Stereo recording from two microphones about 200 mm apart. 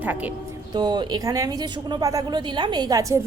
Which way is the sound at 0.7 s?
20° right (ahead or behind).